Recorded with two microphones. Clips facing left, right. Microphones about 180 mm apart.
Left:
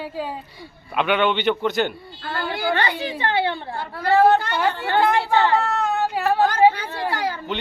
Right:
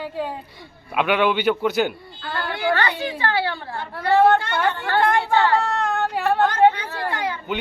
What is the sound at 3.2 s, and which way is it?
Speech, 20° left (ahead or behind).